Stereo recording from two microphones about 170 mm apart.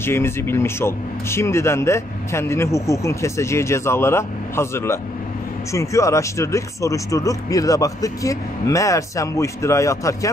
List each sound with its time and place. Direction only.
0.0 s speech: 15° left (ahead or behind)